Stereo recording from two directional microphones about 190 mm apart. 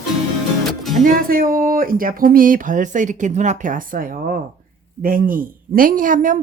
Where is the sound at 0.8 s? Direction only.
Centre (ahead or behind).